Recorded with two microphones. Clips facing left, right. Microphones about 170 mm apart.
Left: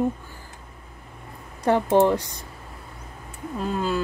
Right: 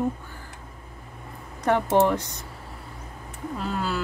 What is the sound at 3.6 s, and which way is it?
Speech, 20° left (ahead or behind).